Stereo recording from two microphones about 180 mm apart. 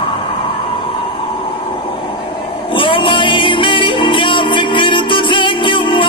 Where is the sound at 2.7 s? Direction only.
30° left (ahead or behind).